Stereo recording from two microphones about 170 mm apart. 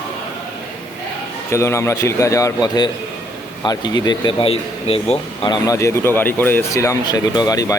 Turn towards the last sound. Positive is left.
turn(degrees=20)  # may be behind; listen again after turning